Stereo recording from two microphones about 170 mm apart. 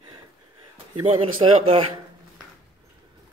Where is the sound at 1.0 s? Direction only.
35° right (ahead or behind).